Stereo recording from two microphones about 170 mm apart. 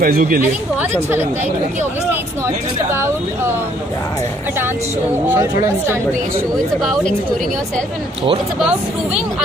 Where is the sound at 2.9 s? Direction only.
15° right (ahead or behind).